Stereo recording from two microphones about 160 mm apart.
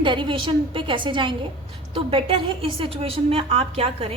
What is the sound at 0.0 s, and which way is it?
A woman's voice, 30° right (ahead or behind).